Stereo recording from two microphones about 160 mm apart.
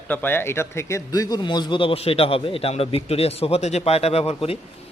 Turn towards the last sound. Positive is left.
turn(degrees=35)  # may be behind; listen again after turning